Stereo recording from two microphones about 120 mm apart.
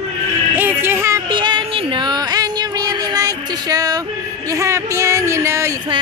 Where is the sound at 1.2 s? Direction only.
40° right (ahead or behind); by 5.8 s 25° right (ahead or behind).